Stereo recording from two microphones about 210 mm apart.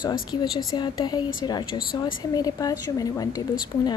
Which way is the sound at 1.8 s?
45° left (ahead or behind).